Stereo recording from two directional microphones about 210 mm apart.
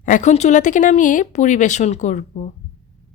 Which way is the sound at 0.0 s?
35° left (ahead or behind).